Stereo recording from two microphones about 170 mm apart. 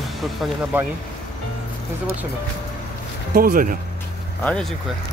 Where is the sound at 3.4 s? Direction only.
55° right (ahead or behind).